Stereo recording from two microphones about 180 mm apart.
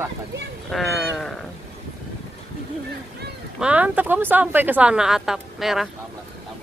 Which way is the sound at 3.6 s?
10° right (ahead or behind).